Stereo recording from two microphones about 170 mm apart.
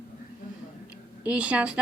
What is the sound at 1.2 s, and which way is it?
Speech, 5° right (ahead or behind).